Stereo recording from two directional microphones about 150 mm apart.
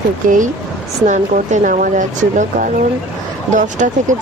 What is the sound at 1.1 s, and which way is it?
Speech, 55° right (ahead or behind).